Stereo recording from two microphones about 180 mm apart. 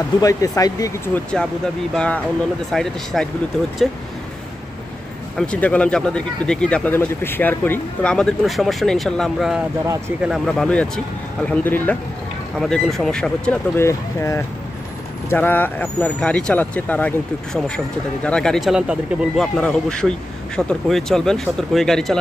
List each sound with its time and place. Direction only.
0.2 s speech: 20° left (ahead or behind); by 3.3 s centre (ahead or behind)
5.5 s speech: 5° left (ahead or behind)
9.8 s speech: 15° right (ahead or behind)
10.3 s speech: centre (ahead or behind)